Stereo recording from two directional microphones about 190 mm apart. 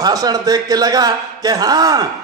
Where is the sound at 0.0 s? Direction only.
20° right (ahead or behind).